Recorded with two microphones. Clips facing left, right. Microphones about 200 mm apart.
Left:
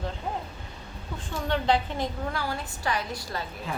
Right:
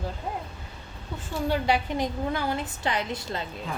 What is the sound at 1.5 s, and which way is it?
A woman's voice, 10° right (ahead or behind).